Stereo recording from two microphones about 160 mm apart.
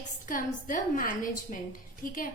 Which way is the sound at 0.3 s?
60° left (ahead or behind).